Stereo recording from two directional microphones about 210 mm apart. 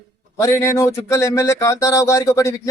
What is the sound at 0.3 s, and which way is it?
Speech, 15° left (ahead or behind).